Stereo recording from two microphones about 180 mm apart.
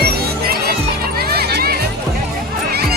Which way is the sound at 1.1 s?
60° right (ahead or behind).